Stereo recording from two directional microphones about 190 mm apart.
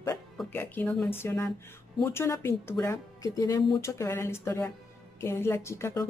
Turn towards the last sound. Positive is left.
turn(degrees=15)  # may be behind; listen again after turning